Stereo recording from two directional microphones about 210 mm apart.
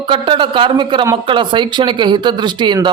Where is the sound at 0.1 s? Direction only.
25° right (ahead or behind).